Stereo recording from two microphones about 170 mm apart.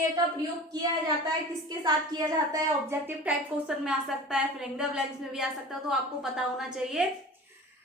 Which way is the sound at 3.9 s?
Centre (ahead or behind).